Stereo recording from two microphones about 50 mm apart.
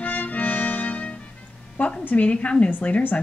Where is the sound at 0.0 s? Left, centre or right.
Left.